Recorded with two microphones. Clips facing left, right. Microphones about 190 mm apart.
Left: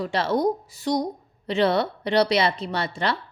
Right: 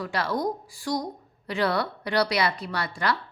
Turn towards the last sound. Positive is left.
turn(degrees=25)  # may be behind; listen again after turning